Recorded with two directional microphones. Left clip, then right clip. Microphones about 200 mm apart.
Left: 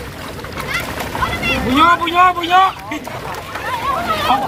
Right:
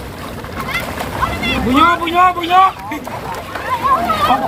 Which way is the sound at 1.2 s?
5° left (ahead or behind).